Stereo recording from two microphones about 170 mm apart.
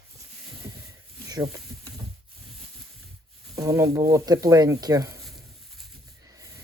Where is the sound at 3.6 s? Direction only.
15° right (ahead or behind).